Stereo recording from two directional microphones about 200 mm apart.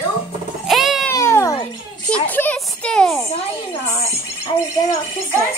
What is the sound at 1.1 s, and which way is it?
Cat, 15° left (ahead or behind).